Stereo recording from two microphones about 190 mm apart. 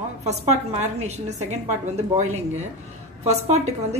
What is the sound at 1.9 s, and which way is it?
Speech, 35° right (ahead or behind).